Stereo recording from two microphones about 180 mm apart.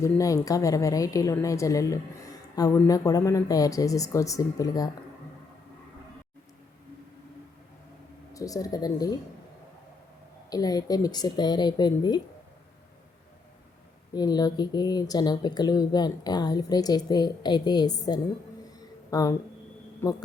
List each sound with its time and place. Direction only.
0.0 s speech: 20° left (ahead or behind)
8.3 s speech: 20° left (ahead or behind)
10.5 s speech: 20° left (ahead or behind)
14.1 s a man's voice: 20° left (ahead or behind)